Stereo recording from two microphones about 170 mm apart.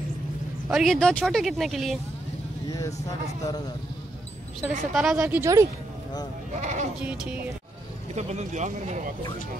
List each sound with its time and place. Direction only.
0.7 s speech: centre (ahead or behind)
3.4 s speech: 20° left (ahead or behind)
4.6 s speech: 10° right (ahead or behind)
6.6 s speech: 45° right (ahead or behind)
7.0 s speech: 10° right (ahead or behind)
8.1 s speech: 40° right (ahead or behind)